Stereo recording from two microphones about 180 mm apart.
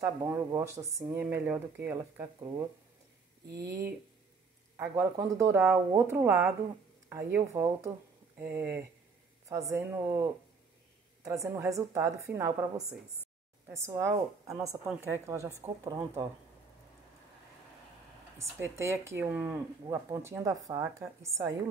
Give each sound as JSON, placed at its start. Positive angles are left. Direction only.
{"t": 0.0, "sound": "speech", "side_deg": -20}
{"t": 3.5, "sound": "speech", "side_deg": -65}
{"t": 4.7, "sound": "speech", "side_deg": -15}
{"t": 11.2, "sound": "a woman's voice", "side_deg": -15}
{"t": 18.4, "sound": "speech", "side_deg": -15}